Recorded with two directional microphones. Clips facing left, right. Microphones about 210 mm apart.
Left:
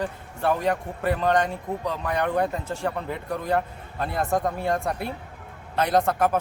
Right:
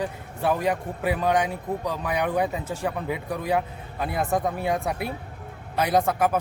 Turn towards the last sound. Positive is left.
turn(degrees=-5)  # may be behind; listen again after turning